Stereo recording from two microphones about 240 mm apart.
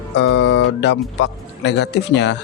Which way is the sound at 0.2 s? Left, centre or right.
Left.